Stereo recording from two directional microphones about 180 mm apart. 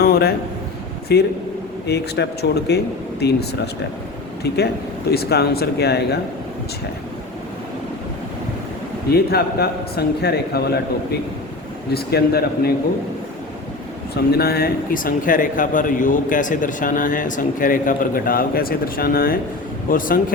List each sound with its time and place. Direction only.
0.0 s a sound: 60° left (ahead or behind)
1.1 s speech: 65° left (ahead or behind)
4.4 s speech: 65° left (ahead or behind)
9.1 s speech: 60° left (ahead or behind)
11.9 s speech: 60° left (ahead or behind)
14.3 s speech: 60° left (ahead or behind)